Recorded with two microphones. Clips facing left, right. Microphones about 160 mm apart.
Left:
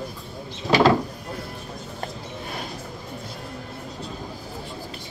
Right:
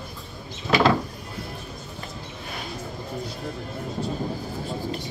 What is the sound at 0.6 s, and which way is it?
Cupboard open or close, 35° left (ahead or behind).